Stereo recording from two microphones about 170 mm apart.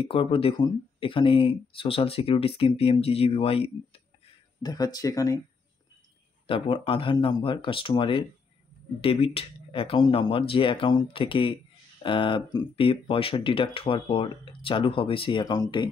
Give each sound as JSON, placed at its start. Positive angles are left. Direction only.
{"t": 0.0, "sound": "speech", "side_deg": 30}
{"t": 4.6, "sound": "speech", "side_deg": 20}
{"t": 6.4, "sound": "speech", "side_deg": 30}